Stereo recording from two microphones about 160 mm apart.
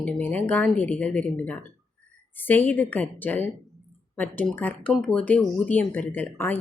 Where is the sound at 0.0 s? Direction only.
10° left (ahead or behind).